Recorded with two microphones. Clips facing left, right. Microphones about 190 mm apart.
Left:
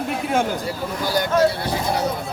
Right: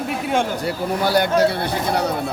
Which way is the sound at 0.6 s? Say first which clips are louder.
Right 4 dB; 65° right (ahead or behind).